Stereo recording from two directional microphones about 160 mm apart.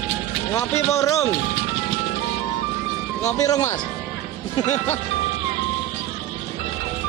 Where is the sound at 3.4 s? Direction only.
20° left (ahead or behind).